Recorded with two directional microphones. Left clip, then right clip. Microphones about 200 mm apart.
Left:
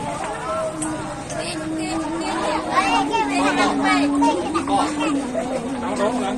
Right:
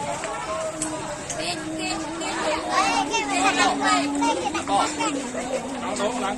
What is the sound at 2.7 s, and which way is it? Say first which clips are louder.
Children playing: left 3 dB; 20° right (ahead or behind).